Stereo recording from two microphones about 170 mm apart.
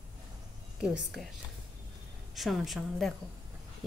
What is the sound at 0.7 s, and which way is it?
Speech, 5° right (ahead or behind).